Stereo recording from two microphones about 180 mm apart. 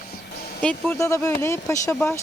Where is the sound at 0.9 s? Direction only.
15° left (ahead or behind).